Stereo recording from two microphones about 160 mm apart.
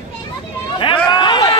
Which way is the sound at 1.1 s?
25° left (ahead or behind).